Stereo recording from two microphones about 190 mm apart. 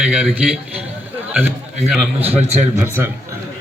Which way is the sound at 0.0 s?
5° right (ahead or behind).